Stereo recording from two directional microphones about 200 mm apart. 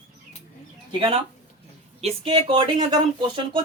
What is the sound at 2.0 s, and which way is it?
Speech, 30° right (ahead or behind).